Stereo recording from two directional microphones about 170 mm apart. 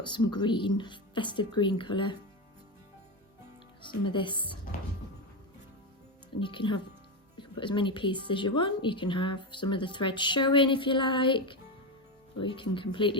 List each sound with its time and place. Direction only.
0.0 s a woman's voice: 25° left (ahead or behind)
3.8 s a woman's voice: 30° left (ahead or behind)
6.4 s a woman's voice: 30° left (ahead or behind)